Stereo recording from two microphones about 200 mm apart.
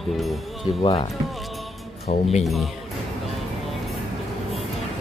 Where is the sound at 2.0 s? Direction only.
30° left (ahead or behind).